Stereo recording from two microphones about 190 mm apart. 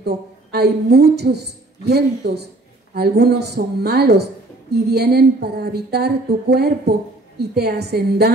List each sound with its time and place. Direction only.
0.0 s a woman's voice: 60° right (ahead or behind)